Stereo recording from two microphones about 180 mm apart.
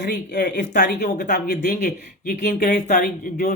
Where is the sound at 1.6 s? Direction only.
45° left (ahead or behind).